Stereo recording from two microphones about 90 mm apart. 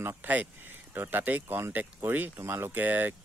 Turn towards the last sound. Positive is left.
turn(degrees=-20)  # may be behind; listen again after turning